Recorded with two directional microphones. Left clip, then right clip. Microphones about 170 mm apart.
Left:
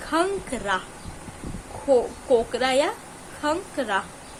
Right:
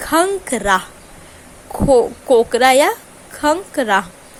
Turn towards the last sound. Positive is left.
turn(degrees=-45)  # may be behind; listen again after turning